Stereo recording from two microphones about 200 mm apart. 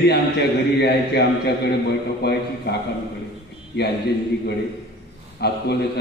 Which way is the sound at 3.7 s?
55° left (ahead or behind).